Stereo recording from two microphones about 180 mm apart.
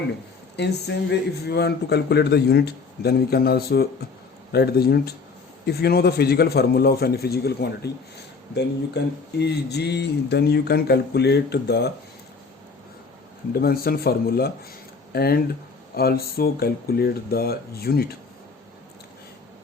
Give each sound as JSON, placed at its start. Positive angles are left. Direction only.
{"t": 0.5, "sound": "speech", "side_deg": 70}
{"t": 9.4, "sound": "speech", "side_deg": 65}
{"t": 13.5, "sound": "speech", "side_deg": 55}